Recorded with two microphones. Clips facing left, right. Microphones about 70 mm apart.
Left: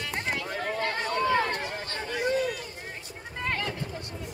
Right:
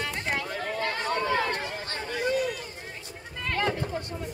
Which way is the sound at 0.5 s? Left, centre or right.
Centre.